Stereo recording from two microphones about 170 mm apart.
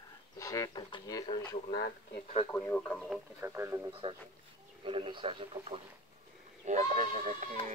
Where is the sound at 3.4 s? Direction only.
15° right (ahead or behind).